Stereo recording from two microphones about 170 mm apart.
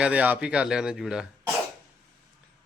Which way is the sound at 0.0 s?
10° right (ahead or behind).